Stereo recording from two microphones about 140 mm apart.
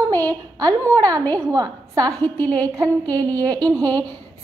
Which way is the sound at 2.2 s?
10° left (ahead or behind).